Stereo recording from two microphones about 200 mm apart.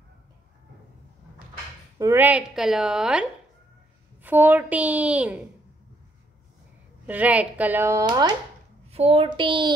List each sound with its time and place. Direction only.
2.0 s a woman's voice: 10° right (ahead or behind)
7.1 s a woman's voice: 5° right (ahead or behind)
8.8 s a child's voice: 30° right (ahead or behind)